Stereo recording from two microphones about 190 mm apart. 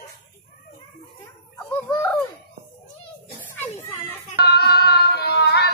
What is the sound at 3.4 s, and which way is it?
Children playing, 10° left (ahead or behind).